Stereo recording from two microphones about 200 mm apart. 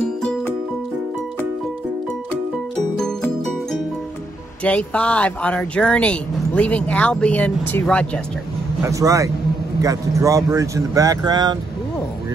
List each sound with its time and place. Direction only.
0.2 s music: 5° left (ahead or behind)
4.6 s speech: 5° left (ahead or behind)
8.8 s speech: 15° right (ahead or behind)